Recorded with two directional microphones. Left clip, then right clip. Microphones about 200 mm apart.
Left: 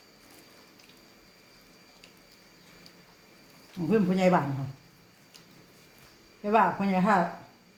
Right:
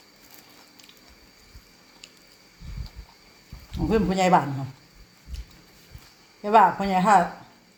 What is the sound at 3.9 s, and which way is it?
Speech, 50° right (ahead or behind).